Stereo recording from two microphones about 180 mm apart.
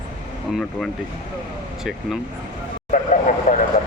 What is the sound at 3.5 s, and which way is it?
Vehicle, 40° left (ahead or behind).